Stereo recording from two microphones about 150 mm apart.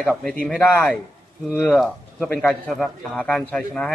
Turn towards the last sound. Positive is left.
turn(degrees=5)  # may be behind; listen again after turning